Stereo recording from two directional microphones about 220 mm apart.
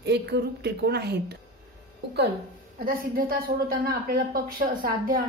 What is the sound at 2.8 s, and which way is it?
A woman's voice, 40° right (ahead or behind).